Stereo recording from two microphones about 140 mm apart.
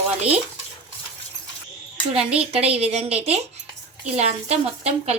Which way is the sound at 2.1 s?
45° right (ahead or behind).